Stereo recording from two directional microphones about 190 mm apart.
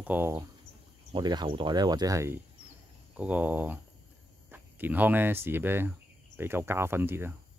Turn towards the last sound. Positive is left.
turn(degrees=-10)  # may be behind; listen again after turning